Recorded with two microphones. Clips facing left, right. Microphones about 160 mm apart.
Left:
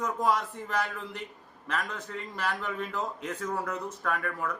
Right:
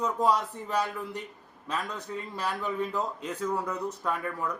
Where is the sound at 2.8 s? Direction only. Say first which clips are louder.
Right 3 dB; 15° right (ahead or behind).